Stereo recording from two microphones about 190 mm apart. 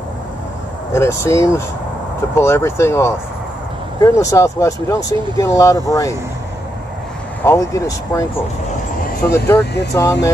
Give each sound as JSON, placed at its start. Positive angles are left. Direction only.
{"t": 0.9, "sound": "speech", "side_deg": 15}
{"t": 7.4, "sound": "speech", "side_deg": 15}
{"t": 9.3, "sound": "speech", "side_deg": 15}